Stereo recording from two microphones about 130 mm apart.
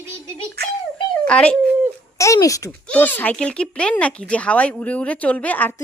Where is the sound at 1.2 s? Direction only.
10° left (ahead or behind).